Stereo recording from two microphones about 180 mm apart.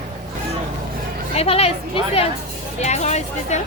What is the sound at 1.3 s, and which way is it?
A woman's voice, 35° left (ahead or behind).